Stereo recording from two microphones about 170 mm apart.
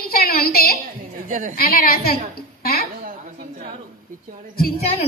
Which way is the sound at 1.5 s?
60° left (ahead or behind).